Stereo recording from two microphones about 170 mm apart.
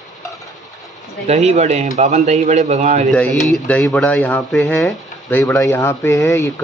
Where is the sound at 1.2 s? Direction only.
40° right (ahead or behind).